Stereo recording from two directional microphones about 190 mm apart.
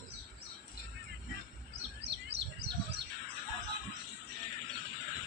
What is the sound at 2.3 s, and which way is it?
Bird, 65° right (ahead or behind).